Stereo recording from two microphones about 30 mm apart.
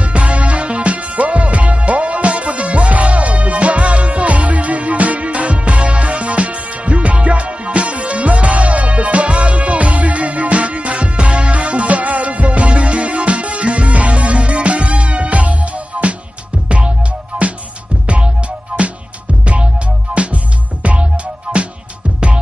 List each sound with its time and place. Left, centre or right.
0.0 s music: right
18.7 s music: centre
19.4 s music: right
20.1 s music: centre
20.8 s music: right